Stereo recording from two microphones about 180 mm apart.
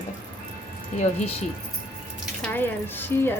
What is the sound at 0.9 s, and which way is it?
Speech, 35° left (ahead or behind).